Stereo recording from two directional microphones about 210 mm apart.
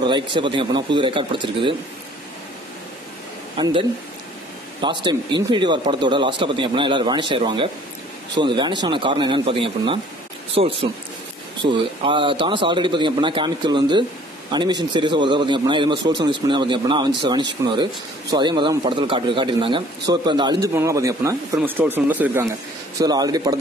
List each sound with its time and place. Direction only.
0.0 s speech: 20° right (ahead or behind)
3.5 s speech: 25° right (ahead or behind)
4.8 s speech: 20° right (ahead or behind)